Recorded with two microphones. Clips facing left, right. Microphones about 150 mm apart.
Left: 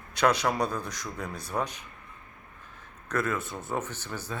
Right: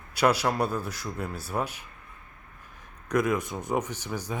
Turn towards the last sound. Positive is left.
turn(degrees=-15)  # may be behind; listen again after turning